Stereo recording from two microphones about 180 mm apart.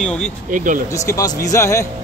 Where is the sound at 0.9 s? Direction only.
15° left (ahead or behind).